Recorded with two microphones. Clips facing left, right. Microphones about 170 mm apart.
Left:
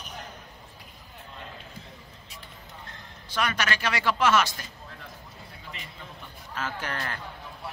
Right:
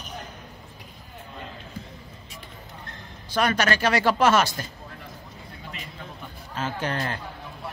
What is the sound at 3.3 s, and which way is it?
Speech, 40° right (ahead or behind).